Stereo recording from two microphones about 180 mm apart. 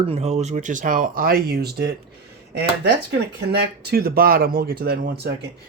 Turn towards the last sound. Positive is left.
turn(degrees=-60)  # may be behind; listen again after turning